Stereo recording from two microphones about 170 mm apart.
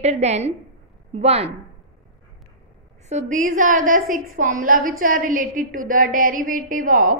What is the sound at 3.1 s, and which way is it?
A woman's voice, 45° right (ahead or behind).